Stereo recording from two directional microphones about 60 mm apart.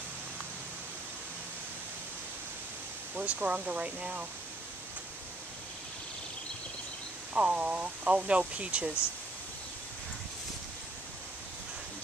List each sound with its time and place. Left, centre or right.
3.2 s speech: right
7.3 s speech: centre